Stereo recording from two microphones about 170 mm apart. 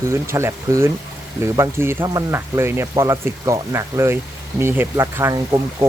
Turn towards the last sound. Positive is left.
turn(degrees=-20)  # may be behind; listen again after turning